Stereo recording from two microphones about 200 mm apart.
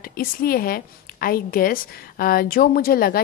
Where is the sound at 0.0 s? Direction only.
45° left (ahead or behind).